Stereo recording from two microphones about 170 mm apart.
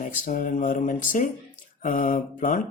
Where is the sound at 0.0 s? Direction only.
50° left (ahead or behind).